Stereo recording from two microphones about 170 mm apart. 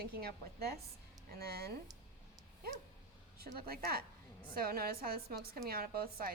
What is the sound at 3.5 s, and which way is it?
A woman's voice, 60° right (ahead or behind).